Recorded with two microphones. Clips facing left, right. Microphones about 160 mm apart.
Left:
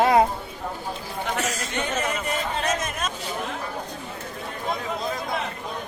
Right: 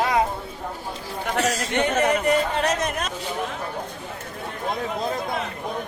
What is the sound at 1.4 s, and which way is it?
Speech, 65° right (ahead or behind).